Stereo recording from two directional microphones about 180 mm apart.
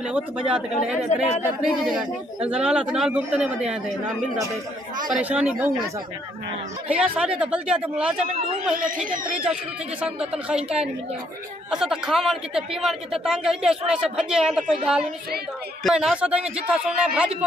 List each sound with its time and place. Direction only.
0.1 s a man's voice: 5° right (ahead or behind)
5.1 s speech: 5° right (ahead or behind)
6.9 s a man's voice: 5° right (ahead or behind)
8.7 s speech: 50° right (ahead or behind)
10.0 s a man's voice: 5° right (ahead or behind)